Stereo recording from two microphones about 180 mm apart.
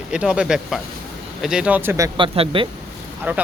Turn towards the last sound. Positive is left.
turn(degrees=-10)  # may be behind; listen again after turning